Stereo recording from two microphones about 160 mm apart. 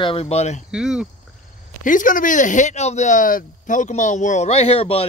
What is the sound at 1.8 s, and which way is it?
Speech, 55° left (ahead or behind).